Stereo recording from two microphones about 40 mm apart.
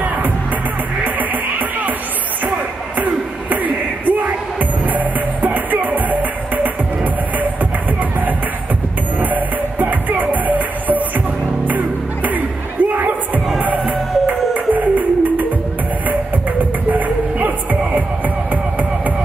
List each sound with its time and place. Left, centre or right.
1.0 s music: right
3.0 s music: right
9.2 s music: right
16.9 s music: right